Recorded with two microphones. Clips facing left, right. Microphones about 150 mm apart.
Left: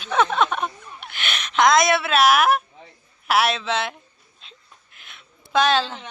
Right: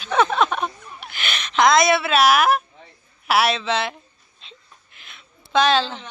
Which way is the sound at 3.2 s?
Centre (ahead or behind).